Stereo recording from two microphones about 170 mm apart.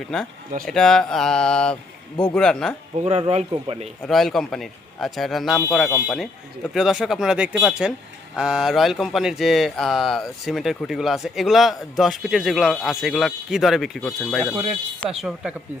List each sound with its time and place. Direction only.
0.1 s speech: 5° left (ahead or behind)
1.7 s speech: 30° left (ahead or behind)
2.3 s speech: 5° left (ahead or behind)
3.0 s speech: 40° right (ahead or behind)
4.1 s speech: centre (ahead or behind)
6.7 s speech: centre (ahead or behind)